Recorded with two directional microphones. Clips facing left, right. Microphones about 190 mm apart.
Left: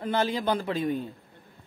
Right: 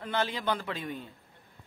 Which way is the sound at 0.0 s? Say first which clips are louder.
Left 5 dB; 40° left (ahead or behind).